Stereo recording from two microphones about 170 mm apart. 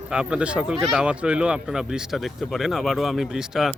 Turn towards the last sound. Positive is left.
turn(degrees=-5)  # may be behind; listen again after turning